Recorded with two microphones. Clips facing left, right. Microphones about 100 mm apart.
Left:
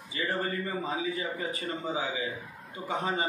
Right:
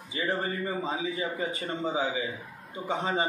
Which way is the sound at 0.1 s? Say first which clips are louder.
Right 1 dB; 25° right (ahead or behind).